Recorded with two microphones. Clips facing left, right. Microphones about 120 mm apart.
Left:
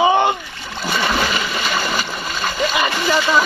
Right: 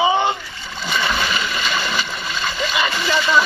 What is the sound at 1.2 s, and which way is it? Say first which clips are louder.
Splash: left 2 dB; 40° left (ahead or behind).